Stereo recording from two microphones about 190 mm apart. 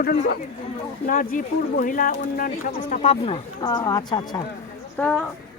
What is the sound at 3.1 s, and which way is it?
Speech, 30° left (ahead or behind).